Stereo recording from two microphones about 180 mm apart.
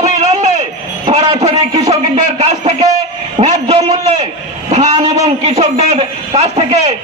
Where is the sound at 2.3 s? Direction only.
35° right (ahead or behind).